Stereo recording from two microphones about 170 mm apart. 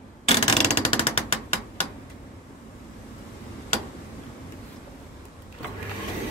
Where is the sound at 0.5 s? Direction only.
40° left (ahead or behind).